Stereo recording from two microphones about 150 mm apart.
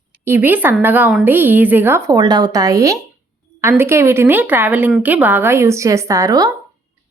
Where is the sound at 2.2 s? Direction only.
30° right (ahead or behind).